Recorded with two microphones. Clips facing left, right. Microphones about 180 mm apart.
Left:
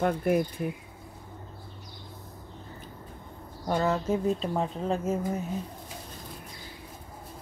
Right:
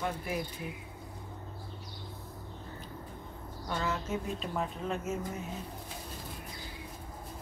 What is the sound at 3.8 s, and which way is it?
Speech, 35° left (ahead or behind).